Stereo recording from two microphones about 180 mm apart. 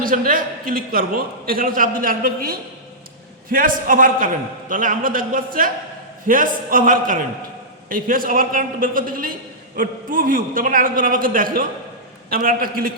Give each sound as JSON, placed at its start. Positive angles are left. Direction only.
{"t": 0.0, "sound": "a man's voice", "side_deg": -50}